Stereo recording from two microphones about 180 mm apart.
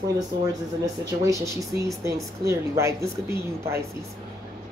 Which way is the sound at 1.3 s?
15° right (ahead or behind).